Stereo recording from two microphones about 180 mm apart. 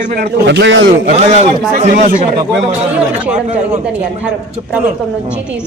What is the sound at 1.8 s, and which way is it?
Speech, 45° right (ahead or behind).